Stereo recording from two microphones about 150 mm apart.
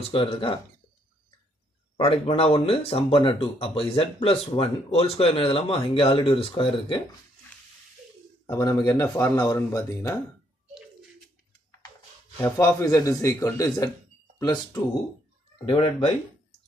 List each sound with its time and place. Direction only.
0.1 s speech: 35° left (ahead or behind)
2.0 s speech: 40° left (ahead or behind)
8.5 s speech: 25° left (ahead or behind)
12.4 s speech: 15° left (ahead or behind)